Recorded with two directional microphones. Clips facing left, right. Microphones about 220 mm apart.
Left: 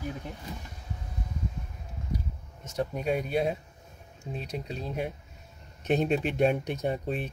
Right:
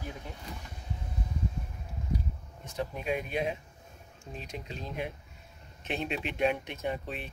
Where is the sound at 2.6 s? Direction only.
40° left (ahead or behind).